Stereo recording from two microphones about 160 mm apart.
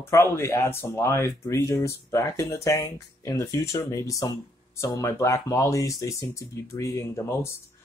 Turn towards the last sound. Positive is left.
turn(degrees=15)  # may be behind; listen again after turning